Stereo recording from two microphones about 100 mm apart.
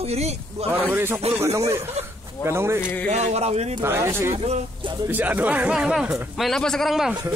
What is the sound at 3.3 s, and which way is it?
Speech, 90° right.